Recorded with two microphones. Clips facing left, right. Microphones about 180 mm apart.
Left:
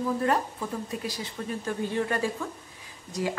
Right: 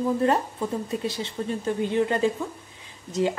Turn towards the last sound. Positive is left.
turn(degrees=-25)  # may be behind; listen again after turning